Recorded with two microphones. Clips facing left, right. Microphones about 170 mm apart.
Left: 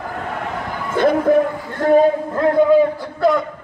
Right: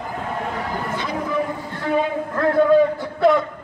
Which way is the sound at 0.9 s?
55° left (ahead or behind).